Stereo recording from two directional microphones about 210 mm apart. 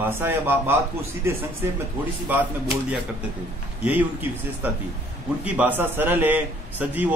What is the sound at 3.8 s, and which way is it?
A man's voice, 10° right (ahead or behind).